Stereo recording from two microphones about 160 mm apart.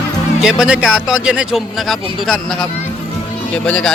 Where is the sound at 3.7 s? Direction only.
5° left (ahead or behind).